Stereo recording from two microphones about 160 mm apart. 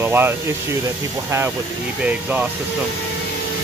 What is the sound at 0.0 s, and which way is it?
Speech, 15° right (ahead or behind).